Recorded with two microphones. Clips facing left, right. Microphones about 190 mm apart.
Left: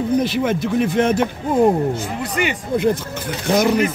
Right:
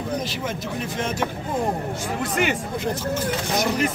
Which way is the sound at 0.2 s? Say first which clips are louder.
Left 10 dB; 60° left (ahead or behind).